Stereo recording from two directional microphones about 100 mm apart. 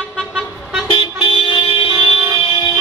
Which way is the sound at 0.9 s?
55° left (ahead or behind).